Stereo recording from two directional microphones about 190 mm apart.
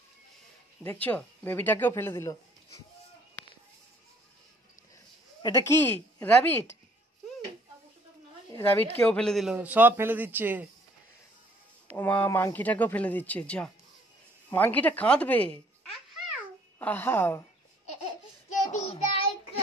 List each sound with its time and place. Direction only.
0.8 s speech: 10° left (ahead or behind)
5.4 s speech: 15° left (ahead or behind)
8.5 s speech: 10° left (ahead or behind); by 10.7 s 10° right (ahead or behind)
12.0 s speech: 10° left (ahead or behind)
16.7 s speech: 10° left (ahead or behind)
18.7 s child singing: 35° left (ahead or behind)